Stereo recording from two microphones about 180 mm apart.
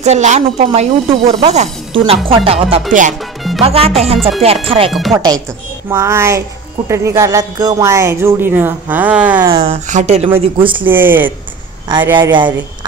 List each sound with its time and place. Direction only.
0.0 s speech: 40° right (ahead or behind)
2.9 s speech: 45° right (ahead or behind)
3.6 s speech: 35° right (ahead or behind); by 9.5 s 10° right (ahead or behind)
9.6 s speech: 40° right (ahead or behind)
10.9 s speech: 10° right (ahead or behind)
12.2 s speech: 25° right (ahead or behind)